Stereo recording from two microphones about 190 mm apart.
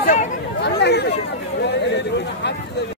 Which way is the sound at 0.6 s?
60° left (ahead or behind).